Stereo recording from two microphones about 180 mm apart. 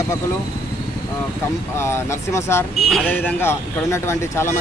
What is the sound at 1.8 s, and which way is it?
Speech, 15° left (ahead or behind).